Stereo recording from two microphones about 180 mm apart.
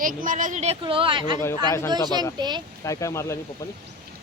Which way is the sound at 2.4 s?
25° right (ahead or behind).